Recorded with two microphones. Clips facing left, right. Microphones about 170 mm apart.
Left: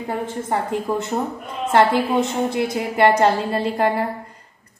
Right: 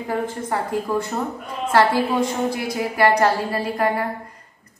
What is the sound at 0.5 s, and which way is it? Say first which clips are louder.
A woman's voice: left 3 dB; 25° left (ahead or behind).